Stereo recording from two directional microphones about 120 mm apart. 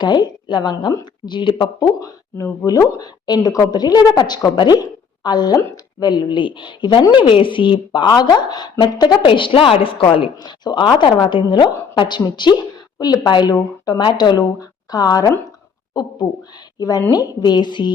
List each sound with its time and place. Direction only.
0.0 s a woman's voice: 40° left (ahead or behind)